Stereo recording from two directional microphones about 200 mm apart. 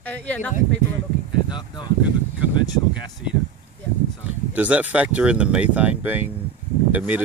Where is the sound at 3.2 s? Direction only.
5° right (ahead or behind).